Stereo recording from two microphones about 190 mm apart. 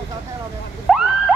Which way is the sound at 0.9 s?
Centre (ahead or behind).